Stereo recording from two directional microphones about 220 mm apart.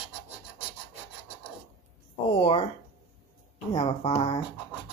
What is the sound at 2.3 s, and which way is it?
Speech, 25° left (ahead or behind).